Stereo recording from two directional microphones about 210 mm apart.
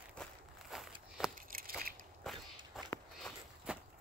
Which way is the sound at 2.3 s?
Centre (ahead or behind).